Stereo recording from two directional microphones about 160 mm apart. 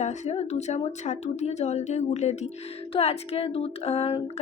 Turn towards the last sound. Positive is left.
turn(degrees=40)  # may be behind; listen again after turning